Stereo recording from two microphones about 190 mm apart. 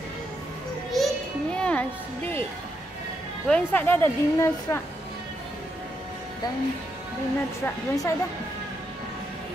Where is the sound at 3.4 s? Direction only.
5° left (ahead or behind).